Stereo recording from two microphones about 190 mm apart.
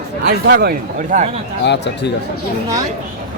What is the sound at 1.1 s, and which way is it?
Speech, 40° right (ahead or behind).